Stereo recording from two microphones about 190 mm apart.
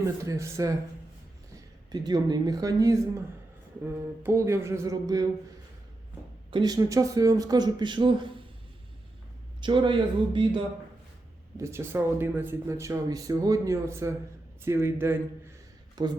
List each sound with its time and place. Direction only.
0.0 s speech: 15° right (ahead or behind)
1.9 s speech: 20° right (ahead or behind)
6.5 s speech: 20° right (ahead or behind)
9.6 s speech: 25° right (ahead or behind)
11.5 s speech: 15° right (ahead or behind)